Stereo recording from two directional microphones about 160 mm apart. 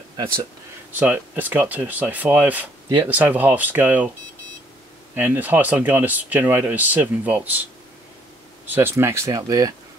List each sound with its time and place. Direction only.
0.9 s speech: 10° right (ahead or behind)
5.1 s speech: 10° right (ahead or behind)
8.6 s speech: 10° right (ahead or behind)